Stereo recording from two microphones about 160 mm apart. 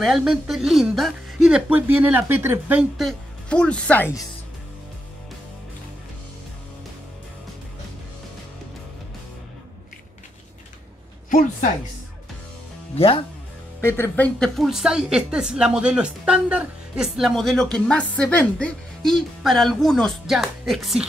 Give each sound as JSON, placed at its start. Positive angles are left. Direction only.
{"t": 0.0, "sound": "a woman's voice", "side_deg": -5}
{"t": 11.2, "sound": "speech", "side_deg": 55}
{"t": 12.9, "sound": "speech", "side_deg": 35}
{"t": 13.7, "sound": "a woman's voice", "side_deg": 15}